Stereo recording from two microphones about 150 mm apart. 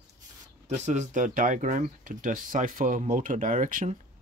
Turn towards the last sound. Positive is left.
turn(degrees=-60)  # may be behind; listen again after turning